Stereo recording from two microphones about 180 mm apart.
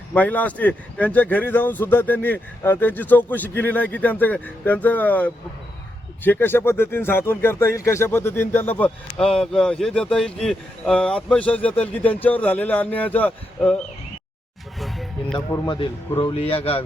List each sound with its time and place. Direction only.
0.1 s speech: 10° left (ahead or behind)
14.8 s music: centre (ahead or behind)
15.5 s a man's voice: 25° left (ahead or behind)